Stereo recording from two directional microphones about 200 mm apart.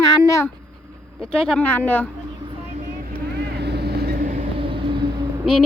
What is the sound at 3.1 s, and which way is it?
Vehicle, 55° right (ahead or behind).